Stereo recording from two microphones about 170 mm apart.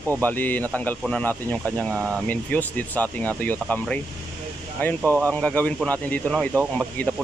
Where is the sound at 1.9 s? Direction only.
15° right (ahead or behind).